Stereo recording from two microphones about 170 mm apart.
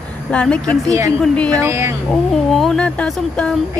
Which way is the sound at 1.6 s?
15° right (ahead or behind).